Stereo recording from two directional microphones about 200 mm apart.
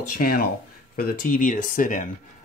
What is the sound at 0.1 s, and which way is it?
Speech, 50° left (ahead or behind).